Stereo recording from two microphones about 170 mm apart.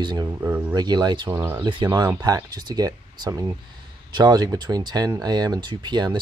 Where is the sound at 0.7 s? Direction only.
25° right (ahead or behind).